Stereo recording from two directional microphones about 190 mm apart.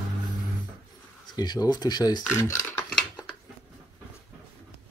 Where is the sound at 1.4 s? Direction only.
20° left (ahead or behind).